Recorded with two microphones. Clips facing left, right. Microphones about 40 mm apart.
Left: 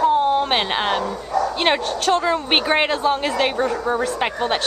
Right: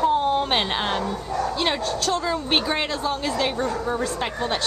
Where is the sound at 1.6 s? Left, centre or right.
Left.